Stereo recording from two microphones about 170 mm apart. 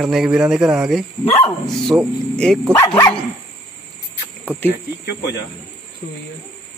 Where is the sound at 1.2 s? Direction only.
35° left (ahead or behind).